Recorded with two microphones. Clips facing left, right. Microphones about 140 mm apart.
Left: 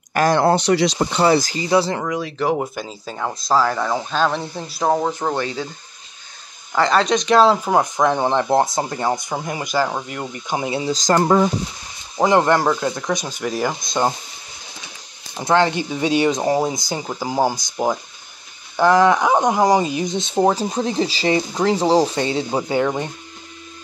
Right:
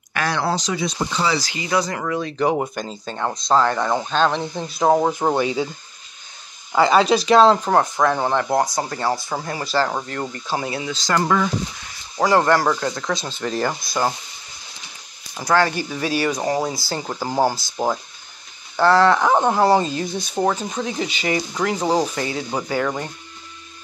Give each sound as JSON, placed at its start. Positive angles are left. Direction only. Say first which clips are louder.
{"t": 0.1, "sound": "speech", "louder": "left 7 dB", "side_deg": 45}
{"t": 0.9, "sound": "speech", "louder": "left 6 dB", "side_deg": 55}
{"t": 1.5, "sound": "speech", "louder": "left 4 dB", "side_deg": 30}
{"t": 2.0, "sound": "speech", "louder": "even", "side_deg": 5}
{"t": 6.7, "sound": "speech", "louder": "right 2 dB", "side_deg": -5}
{"t": 7.8, "sound": "speech", "louder": "left 1 dB", "side_deg": 20}
{"t": 10.9, "sound": "speech", "louder": "left 5 dB", "side_deg": 40}
{"t": 11.2, "sound": "speech", "louder": "left 4 dB", "side_deg": 30}
{"t": 15.3, "sound": "speech", "louder": "left 2 dB", "side_deg": 20}
{"t": 17.0, "sound": "speech", "louder": "even", "side_deg": 10}